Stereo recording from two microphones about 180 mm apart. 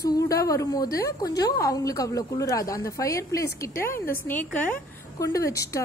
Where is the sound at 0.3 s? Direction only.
15° left (ahead or behind).